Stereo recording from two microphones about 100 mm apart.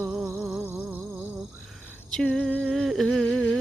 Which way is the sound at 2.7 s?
Centre (ahead or behind).